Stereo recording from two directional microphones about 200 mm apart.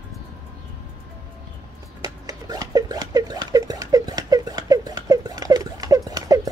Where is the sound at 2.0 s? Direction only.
20° right (ahead or behind).